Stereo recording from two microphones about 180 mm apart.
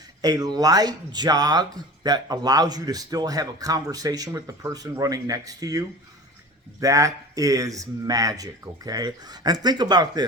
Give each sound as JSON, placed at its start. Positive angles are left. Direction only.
{"t": 0.2, "sound": "speech", "side_deg": -20}